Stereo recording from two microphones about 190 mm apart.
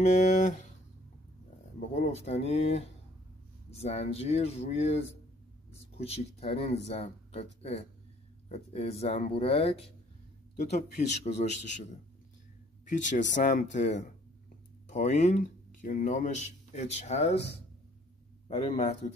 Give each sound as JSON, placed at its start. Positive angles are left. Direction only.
{"t": 0.0, "sound": "speech", "side_deg": 40}
{"t": 2.0, "sound": "speech", "side_deg": 35}
{"t": 18.5, "sound": "speech", "side_deg": 35}